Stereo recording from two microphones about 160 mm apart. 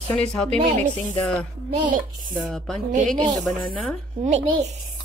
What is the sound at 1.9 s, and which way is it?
Speech, 60° right (ahead or behind).